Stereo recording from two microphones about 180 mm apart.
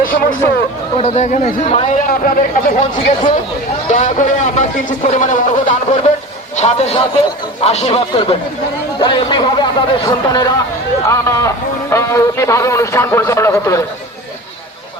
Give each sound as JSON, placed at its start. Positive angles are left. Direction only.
{"t": 0.0, "sound": "hubbub", "side_deg": 50}
{"t": 0.9, "sound": "a man's voice", "side_deg": 35}
{"t": 2.0, "sound": "a man's voice", "side_deg": 50}